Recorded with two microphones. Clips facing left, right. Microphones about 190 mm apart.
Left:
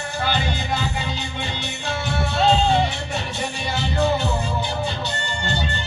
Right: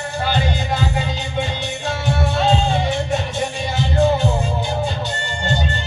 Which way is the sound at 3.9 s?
45° right (ahead or behind).